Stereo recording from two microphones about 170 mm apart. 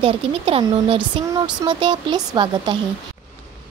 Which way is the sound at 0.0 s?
35° right (ahead or behind).